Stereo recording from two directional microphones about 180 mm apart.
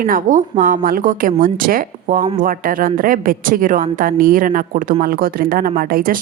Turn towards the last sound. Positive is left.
turn(degrees=-55)  # may be behind; listen again after turning